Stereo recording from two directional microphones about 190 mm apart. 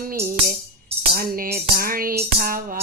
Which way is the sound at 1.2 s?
50° right (ahead or behind).